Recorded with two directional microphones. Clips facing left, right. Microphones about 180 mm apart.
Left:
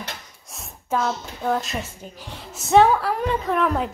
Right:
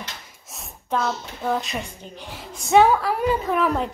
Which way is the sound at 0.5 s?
Centre (ahead or behind).